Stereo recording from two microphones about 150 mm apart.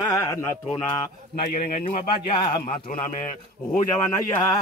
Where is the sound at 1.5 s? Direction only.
55° left (ahead or behind).